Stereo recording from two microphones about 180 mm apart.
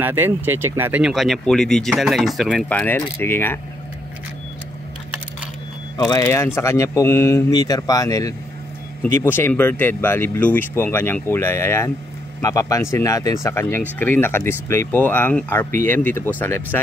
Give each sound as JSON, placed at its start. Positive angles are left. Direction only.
{"t": 0.0, "sound": "speech", "side_deg": -10}
{"t": 5.9, "sound": "speech", "side_deg": 20}